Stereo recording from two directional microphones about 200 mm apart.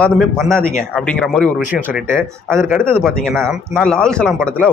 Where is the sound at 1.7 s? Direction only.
10° right (ahead or behind).